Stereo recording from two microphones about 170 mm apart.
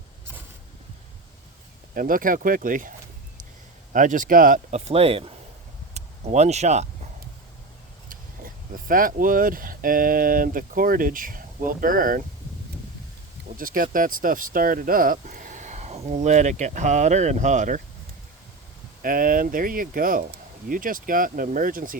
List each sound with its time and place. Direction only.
2.0 s speech: 55° right (ahead or behind)
3.9 s speech: 50° right (ahead or behind); by 5.3 s 35° right (ahead or behind)
5.9 s a sound: 40° right (ahead or behind)
8.1 s speech: 55° right (ahead or behind)
13.6 s speech: 55° right (ahead or behind)
19.0 s speech: 55° right (ahead or behind)